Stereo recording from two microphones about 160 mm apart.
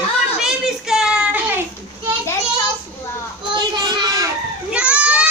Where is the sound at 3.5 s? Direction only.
25° right (ahead or behind).